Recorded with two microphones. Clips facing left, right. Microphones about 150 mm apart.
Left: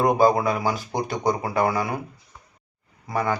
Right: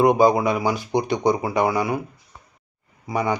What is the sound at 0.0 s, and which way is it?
Speech, 15° right (ahead or behind).